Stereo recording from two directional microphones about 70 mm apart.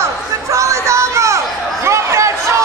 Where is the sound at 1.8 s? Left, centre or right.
Right.